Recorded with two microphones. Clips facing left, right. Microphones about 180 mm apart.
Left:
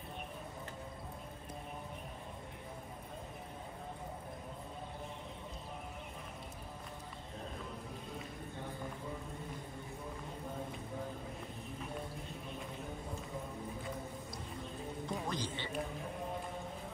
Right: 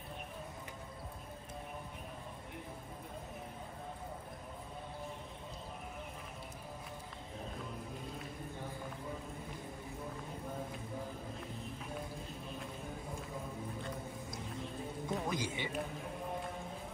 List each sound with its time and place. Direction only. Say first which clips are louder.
15.0 s music: right 3 dB; 5° right (ahead or behind)